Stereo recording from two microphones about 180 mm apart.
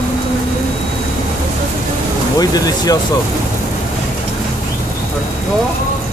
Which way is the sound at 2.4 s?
20° left (ahead or behind).